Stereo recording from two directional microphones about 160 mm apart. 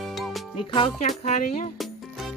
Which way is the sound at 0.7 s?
40° left (ahead or behind).